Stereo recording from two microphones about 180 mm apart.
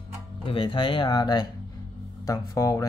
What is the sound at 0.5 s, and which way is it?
Speech, 25° left (ahead or behind).